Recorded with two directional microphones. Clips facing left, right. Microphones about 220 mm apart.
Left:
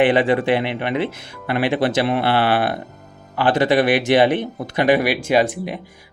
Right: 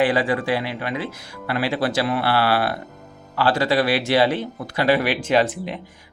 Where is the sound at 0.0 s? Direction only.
20° left (ahead or behind).